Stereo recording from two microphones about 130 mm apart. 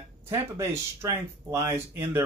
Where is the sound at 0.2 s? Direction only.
15° right (ahead or behind).